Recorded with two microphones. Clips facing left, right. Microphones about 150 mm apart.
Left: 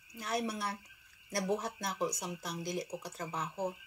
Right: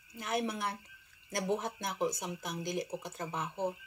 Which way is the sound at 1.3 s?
20° right (ahead or behind).